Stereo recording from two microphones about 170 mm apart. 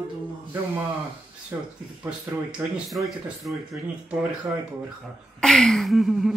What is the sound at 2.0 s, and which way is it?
Speech, 5° right (ahead or behind).